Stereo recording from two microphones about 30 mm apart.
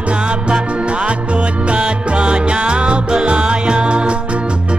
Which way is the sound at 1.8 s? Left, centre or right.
Right.